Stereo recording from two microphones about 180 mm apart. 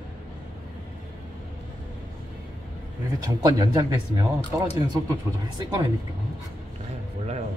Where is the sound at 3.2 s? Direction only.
20° right (ahead or behind).